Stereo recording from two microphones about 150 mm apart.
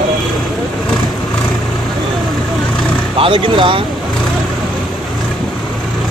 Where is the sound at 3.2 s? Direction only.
35° right (ahead or behind).